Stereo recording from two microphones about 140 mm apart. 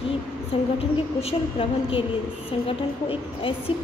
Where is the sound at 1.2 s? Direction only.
40° left (ahead or behind).